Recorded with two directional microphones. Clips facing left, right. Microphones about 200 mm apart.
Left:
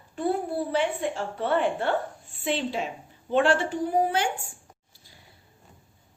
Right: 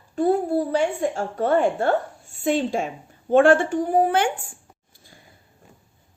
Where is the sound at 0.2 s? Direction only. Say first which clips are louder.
Right 7 dB; 40° right (ahead or behind).